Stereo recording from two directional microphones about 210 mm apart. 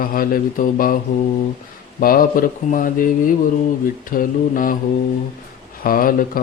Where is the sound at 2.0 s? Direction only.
45° left (ahead or behind).